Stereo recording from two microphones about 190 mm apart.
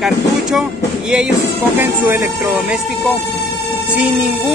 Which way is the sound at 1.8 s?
10° right (ahead or behind).